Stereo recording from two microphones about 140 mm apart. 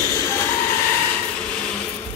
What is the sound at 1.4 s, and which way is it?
Stir, 5° left (ahead or behind).